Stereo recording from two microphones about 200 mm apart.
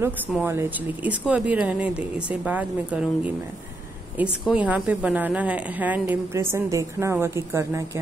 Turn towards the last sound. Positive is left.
turn(degrees=-15)  # may be behind; listen again after turning